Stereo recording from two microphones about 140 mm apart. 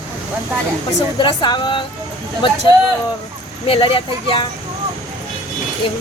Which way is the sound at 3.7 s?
40° left (ahead or behind).